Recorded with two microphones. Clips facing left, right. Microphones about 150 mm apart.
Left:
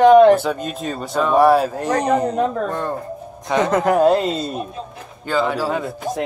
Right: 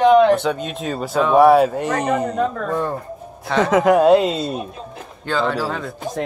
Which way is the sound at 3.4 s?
15° left (ahead or behind).